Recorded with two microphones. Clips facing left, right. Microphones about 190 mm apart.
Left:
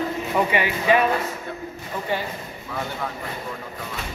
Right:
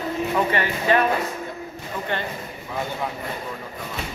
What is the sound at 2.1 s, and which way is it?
Speech, 5° left (ahead or behind).